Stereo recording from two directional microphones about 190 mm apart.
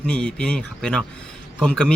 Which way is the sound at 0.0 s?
5° left (ahead or behind).